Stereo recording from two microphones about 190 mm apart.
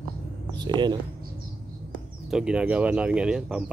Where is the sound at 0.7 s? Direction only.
20° right (ahead or behind).